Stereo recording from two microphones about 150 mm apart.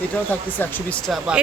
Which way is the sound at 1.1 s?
5° right (ahead or behind).